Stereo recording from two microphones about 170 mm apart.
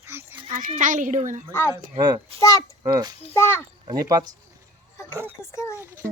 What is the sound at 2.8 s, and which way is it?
Speech, 25° right (ahead or behind).